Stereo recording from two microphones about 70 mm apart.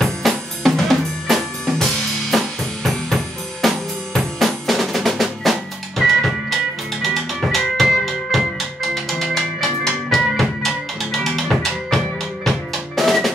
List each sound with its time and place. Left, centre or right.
0.0 s drum kit: centre
3.6 s drum: centre